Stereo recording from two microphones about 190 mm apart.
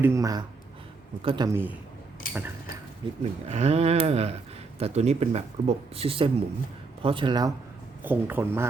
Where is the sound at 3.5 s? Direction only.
35° right (ahead or behind).